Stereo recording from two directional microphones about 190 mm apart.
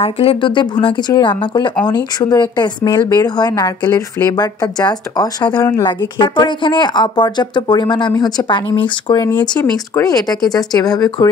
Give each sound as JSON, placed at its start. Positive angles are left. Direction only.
{"t": 0.0, "sound": "a woman's voice", "side_deg": 30}